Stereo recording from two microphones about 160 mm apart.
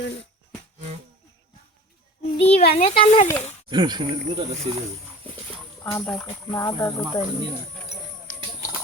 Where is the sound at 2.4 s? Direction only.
40° left (ahead or behind).